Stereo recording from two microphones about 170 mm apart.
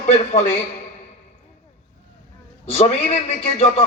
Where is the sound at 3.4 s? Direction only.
35° left (ahead or behind).